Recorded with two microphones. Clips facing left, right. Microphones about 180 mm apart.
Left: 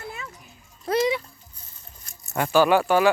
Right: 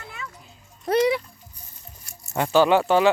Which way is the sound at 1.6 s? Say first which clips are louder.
Right 2 dB; 10° right (ahead or behind).